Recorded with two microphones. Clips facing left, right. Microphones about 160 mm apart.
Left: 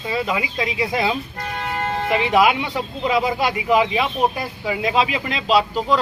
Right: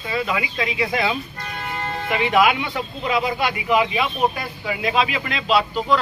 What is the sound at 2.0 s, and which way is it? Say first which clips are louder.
Speech: left 1 dB; 30° left (ahead or behind).